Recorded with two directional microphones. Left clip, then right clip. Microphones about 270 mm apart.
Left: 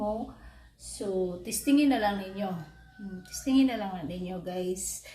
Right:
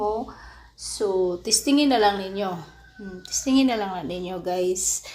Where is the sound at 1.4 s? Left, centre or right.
Right.